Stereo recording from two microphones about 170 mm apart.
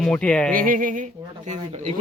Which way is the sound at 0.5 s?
55° right (ahead or behind).